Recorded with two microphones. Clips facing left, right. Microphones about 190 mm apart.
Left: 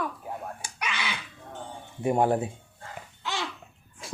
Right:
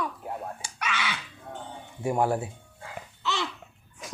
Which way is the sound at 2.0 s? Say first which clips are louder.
Left 2 dB; 25° left (ahead or behind).